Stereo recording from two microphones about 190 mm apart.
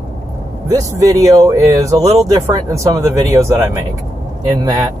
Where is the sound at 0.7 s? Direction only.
15° right (ahead or behind).